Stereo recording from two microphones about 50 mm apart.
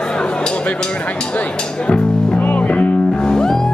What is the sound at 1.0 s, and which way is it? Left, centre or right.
Speech, left.